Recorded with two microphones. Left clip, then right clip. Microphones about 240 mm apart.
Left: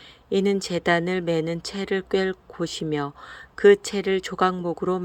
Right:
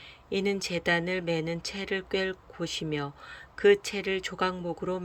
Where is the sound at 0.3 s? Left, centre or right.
Centre.